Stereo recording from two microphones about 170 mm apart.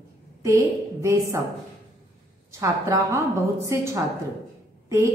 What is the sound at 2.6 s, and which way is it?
A woman's voice, 20° right (ahead or behind).